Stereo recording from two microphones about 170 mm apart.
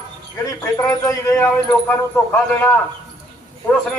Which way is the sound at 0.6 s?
20° left (ahead or behind).